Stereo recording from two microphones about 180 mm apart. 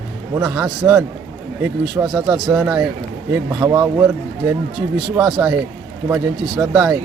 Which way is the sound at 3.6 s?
20° right (ahead or behind).